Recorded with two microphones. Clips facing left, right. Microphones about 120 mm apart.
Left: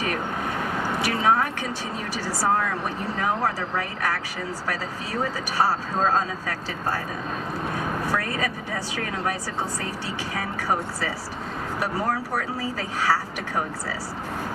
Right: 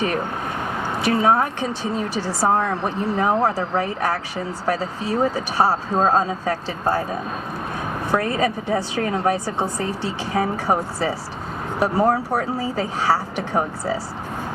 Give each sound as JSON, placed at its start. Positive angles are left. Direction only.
{"t": 1.0, "sound": "speech", "side_deg": -30}
{"t": 8.0, "sound": "speech", "side_deg": -25}